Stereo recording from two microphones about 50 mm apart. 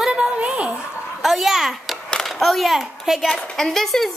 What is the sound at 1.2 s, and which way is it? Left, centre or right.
A child's voice, centre.